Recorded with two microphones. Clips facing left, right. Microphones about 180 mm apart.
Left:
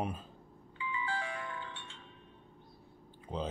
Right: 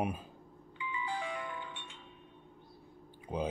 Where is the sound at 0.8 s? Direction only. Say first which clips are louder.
Even; 15° right (ahead or behind).